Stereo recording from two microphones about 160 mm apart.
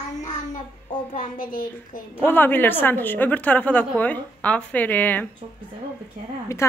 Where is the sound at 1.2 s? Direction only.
60° left (ahead or behind).